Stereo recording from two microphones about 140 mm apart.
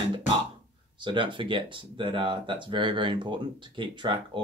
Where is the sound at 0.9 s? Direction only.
35° right (ahead or behind).